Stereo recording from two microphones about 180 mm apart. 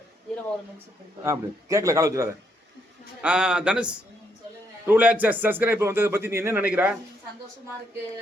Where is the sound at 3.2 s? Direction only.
5° right (ahead or behind).